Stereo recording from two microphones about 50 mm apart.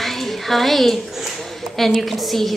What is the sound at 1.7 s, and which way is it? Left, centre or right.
Speech, centre.